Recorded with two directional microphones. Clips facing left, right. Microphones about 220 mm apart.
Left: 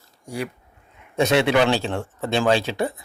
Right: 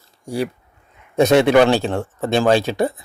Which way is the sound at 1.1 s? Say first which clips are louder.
Right 6 dB; 45° right (ahead or behind).